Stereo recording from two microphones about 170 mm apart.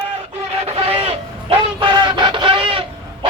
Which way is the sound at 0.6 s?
35° right (ahead or behind).